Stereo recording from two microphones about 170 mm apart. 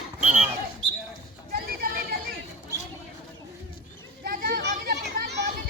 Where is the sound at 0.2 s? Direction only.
45° right (ahead or behind).